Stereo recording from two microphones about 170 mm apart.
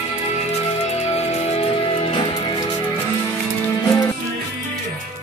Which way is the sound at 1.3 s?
35° left (ahead or behind).